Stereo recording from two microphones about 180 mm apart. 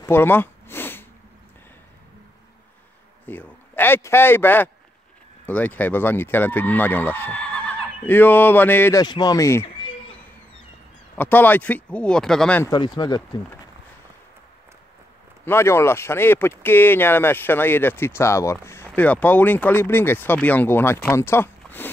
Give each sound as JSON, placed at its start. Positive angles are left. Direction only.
{"t": 0.0, "sound": "a sound", "side_deg": 10}
{"t": 3.3, "sound": "speech", "side_deg": 10}
{"t": 9.0, "sound": "speech", "side_deg": 20}
{"t": 11.1, "sound": "speech", "side_deg": 10}
{"t": 12.6, "sound": "speech", "side_deg": 25}
{"t": 15.4, "sound": "speech", "side_deg": 15}